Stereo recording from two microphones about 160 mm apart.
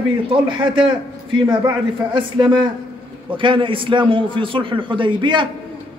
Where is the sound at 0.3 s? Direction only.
30° right (ahead or behind).